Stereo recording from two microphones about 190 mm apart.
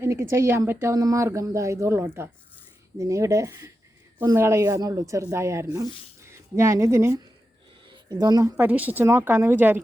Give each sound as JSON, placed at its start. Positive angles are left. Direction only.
{"t": 0.0, "sound": "speech", "side_deg": -15}